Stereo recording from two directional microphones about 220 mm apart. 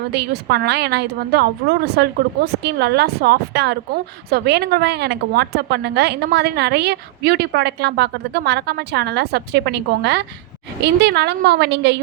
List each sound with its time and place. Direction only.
0.1 s a woman's voice: 50° right (ahead or behind)